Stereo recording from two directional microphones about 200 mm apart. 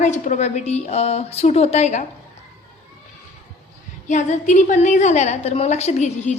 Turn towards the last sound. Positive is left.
turn(degrees=35)  # may be behind; listen again after turning